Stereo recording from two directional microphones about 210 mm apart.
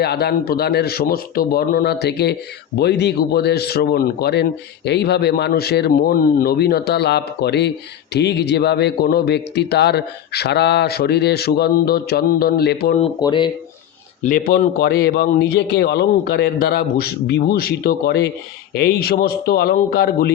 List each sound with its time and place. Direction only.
0.0 s speech: 50° left (ahead or behind)
13.0 s speech: 20° left (ahead or behind)
14.3 s speech: 45° left (ahead or behind)